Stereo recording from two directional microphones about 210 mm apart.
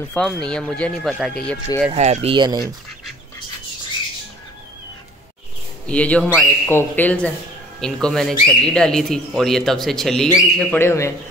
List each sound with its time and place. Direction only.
0.1 s speech: 5° left (ahead or behind)
1.9 s speech: 30° right (ahead or behind)
5.9 s a man's voice: 5° left (ahead or behind)